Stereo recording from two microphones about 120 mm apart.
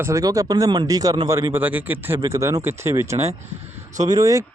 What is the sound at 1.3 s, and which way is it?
Speech, 25° right (ahead or behind).